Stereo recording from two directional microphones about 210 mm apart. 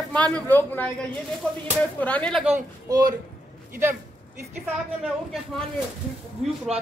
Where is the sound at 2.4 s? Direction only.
15° right (ahead or behind).